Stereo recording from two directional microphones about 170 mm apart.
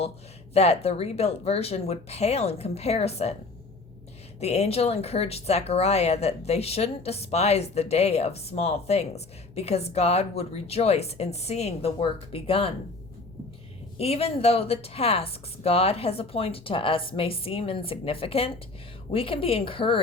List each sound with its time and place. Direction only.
0.5 s speech: 35° left (ahead or behind)
4.4 s speech: 40° left (ahead or behind)
14.0 s speech: 35° left (ahead or behind)